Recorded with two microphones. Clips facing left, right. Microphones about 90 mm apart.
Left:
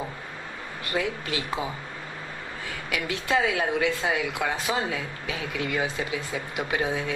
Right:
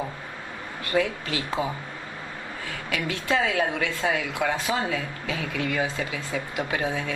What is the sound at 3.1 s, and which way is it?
Speech, 25° left (ahead or behind).